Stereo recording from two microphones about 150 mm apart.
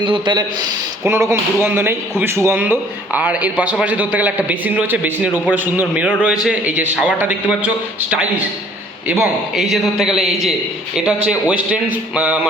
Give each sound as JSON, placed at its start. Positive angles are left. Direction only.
{"t": 0.0, "sound": "speech", "side_deg": -30}
{"t": 1.0, "sound": "a man's voice", "side_deg": -15}
{"t": 9.6, "sound": "a man's voice", "side_deg": 0}